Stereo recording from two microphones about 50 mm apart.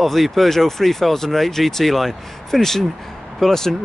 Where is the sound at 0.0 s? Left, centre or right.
Centre.